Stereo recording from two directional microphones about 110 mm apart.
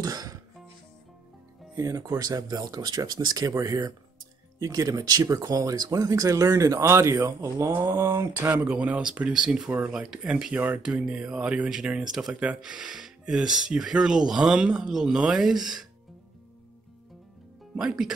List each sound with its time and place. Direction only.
0.0 s music: 35° right (ahead or behind)
1.8 s speech: 30° right (ahead or behind)
8.4 s speech: 15° right (ahead or behind)
17.7 s speech: 5° right (ahead or behind)